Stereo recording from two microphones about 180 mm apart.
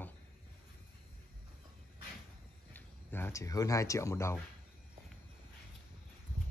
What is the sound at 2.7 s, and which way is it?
Speech, 10° left (ahead or behind).